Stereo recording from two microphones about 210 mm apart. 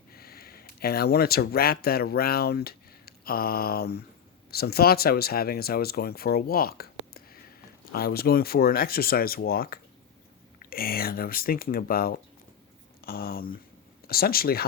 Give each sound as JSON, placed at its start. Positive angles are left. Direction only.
{"t": 0.1, "sound": "speech", "side_deg": 45}